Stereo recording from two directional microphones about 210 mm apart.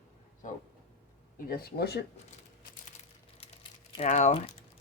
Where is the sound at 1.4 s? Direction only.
45° left (ahead or behind).